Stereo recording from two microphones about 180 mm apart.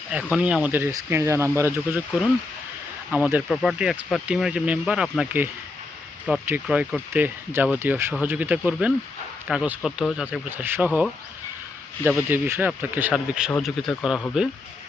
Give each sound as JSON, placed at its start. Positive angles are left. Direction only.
{"t": 0.1, "sound": "speech", "side_deg": -5}
{"t": 3.1, "sound": "speech", "side_deg": -5}
{"t": 12.0, "sound": "speech", "side_deg": -10}